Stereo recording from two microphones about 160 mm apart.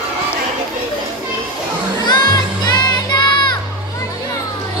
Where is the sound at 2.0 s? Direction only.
25° left (ahead or behind).